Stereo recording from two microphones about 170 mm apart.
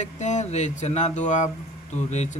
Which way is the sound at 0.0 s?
45° left (ahead or behind).